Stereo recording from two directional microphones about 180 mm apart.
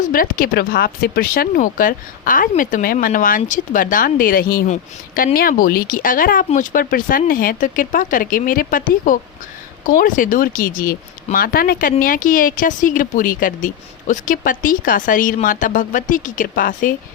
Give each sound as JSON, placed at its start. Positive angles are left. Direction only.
{"t": 0.0, "sound": "speech", "side_deg": 50}